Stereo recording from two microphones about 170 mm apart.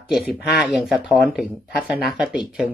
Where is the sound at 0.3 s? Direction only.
Centre (ahead or behind).